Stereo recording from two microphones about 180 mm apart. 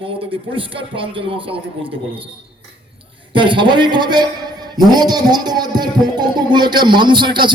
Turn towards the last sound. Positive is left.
turn(degrees=-25)  # may be behind; listen again after turning